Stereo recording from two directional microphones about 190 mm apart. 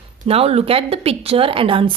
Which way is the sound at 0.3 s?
30° right (ahead or behind).